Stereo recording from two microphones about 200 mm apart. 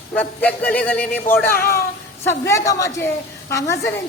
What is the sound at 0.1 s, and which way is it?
A woman's voice, 5° left (ahead or behind).